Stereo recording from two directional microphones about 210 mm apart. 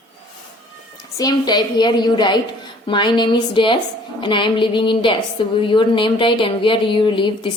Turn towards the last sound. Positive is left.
turn(degrees=25)  # may be behind; listen again after turning